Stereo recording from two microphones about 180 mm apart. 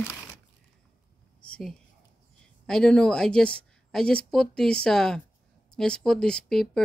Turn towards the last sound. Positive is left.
turn(degrees=0)  # may be behind; listen again after turning